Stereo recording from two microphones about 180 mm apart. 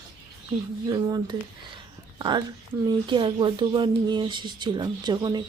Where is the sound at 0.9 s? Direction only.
20° right (ahead or behind).